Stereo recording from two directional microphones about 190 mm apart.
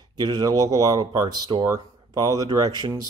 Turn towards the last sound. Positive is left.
turn(degrees=-20)  # may be behind; listen again after turning